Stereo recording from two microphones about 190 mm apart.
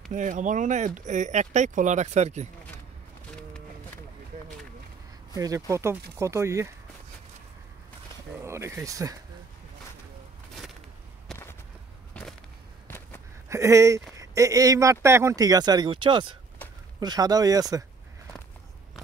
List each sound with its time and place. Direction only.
0.1 s speech: 40° right (ahead or behind)
5.3 s speech: 20° right (ahead or behind)
8.5 s speech: 15° right (ahead or behind)
11.3 s a sound: centre (ahead or behind)
13.5 s speech: 15° right (ahead or behind)